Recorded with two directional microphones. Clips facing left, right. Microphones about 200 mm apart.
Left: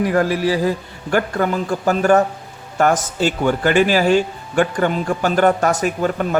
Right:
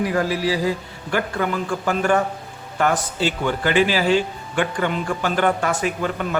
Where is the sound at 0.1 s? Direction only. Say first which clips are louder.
Left 4 dB; 55° left (ahead or behind).